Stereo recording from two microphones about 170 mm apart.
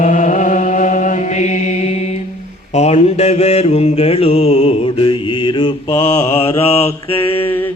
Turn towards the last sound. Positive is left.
turn(degrees=40)  # may be behind; listen again after turning